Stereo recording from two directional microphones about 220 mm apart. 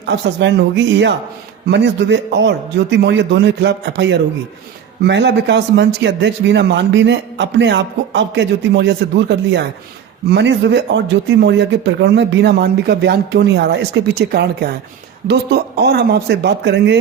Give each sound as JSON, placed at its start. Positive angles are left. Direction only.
{"t": 0.0, "sound": "a man's voice", "side_deg": -50}